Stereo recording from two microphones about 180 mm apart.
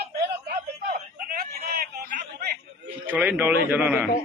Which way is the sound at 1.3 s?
55° right (ahead or behind).